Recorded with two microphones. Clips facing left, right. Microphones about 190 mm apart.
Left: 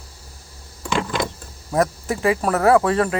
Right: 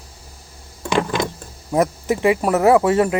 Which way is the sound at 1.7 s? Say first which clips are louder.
Right 2 dB; 15° right (ahead or behind).